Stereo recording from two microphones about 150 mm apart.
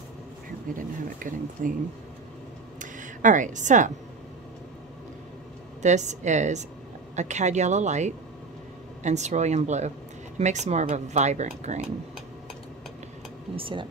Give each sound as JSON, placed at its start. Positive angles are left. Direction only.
{"t": 0.7, "sound": "speech", "side_deg": -65}
{"t": 2.8, "sound": "a sound", "side_deg": -60}
{"t": 5.8, "sound": "speech", "side_deg": -50}
{"t": 13.6, "sound": "speech", "side_deg": -35}